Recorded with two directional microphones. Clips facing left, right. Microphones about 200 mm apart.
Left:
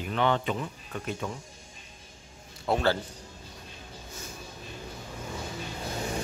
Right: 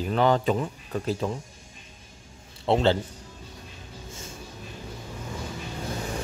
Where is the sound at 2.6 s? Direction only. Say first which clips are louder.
Right 4 dB; 20° right (ahead or behind).